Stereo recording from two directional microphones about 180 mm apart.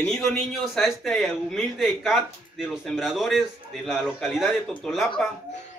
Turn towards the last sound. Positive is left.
turn(degrees=0)  # may be behind; listen again after turning